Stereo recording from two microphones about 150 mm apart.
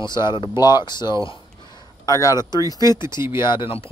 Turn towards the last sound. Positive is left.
turn(degrees=35)  # may be behind; listen again after turning